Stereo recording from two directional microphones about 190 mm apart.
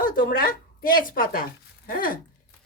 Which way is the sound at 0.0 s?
50° left (ahead or behind).